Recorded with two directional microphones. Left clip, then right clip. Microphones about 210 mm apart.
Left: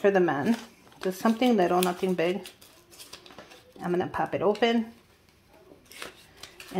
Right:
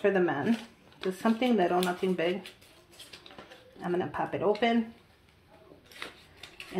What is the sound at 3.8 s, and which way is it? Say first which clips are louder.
Speech: left 3 dB; 40° left (ahead or behind).